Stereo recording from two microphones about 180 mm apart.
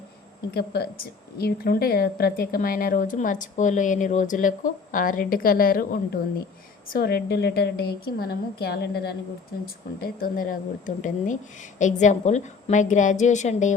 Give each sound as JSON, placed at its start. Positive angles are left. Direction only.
{"t": 0.5, "sound": "a woman's voice", "side_deg": 60}
{"t": 10.0, "sound": "a woman's voice", "side_deg": 55}